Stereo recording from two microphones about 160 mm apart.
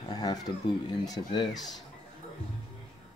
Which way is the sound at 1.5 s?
Centre (ahead or behind).